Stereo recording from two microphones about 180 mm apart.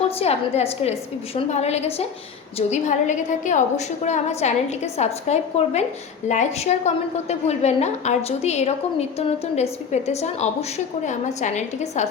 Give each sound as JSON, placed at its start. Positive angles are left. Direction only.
{"t": 0.2, "sound": "a woman's voice", "side_deg": 35}